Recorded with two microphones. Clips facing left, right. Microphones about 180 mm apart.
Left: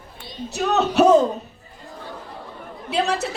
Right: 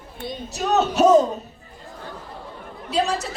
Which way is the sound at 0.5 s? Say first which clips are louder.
Left 2 dB; 60° left (ahead or behind).